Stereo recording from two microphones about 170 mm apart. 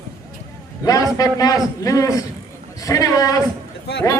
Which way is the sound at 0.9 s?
20° left (ahead or behind).